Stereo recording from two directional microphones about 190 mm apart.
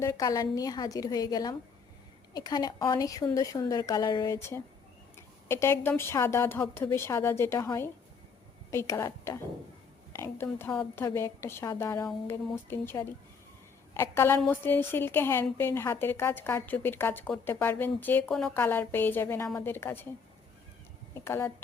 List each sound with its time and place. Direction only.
0.0 s a woman's voice: 15° left (ahead or behind)
21.1 s speech: 15° left (ahead or behind)